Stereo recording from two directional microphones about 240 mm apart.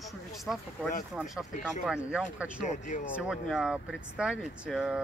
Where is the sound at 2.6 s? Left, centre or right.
Left.